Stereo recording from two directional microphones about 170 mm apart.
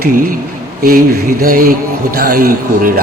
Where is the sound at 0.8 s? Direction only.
60° right (ahead or behind).